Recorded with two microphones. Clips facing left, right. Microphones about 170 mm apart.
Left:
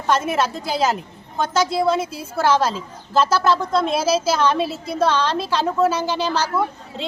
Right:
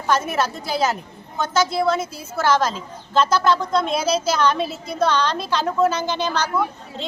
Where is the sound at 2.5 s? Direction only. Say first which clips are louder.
Even; 10° left (ahead or behind).